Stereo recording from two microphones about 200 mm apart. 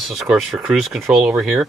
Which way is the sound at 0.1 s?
Centre (ahead or behind).